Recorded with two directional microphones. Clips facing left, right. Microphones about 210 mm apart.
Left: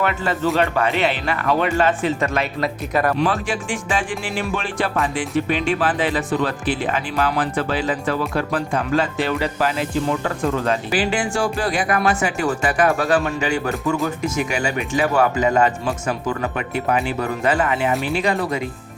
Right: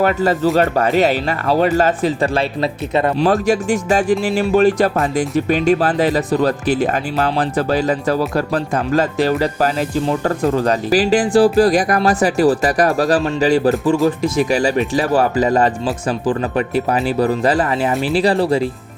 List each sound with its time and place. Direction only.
0.0 s speech: 40° right (ahead or behind); by 3.2 s 25° right (ahead or behind)
3.2 s speech: 40° right (ahead or behind)